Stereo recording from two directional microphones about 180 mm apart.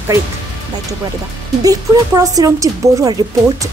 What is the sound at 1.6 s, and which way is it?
Speech, 20° right (ahead or behind).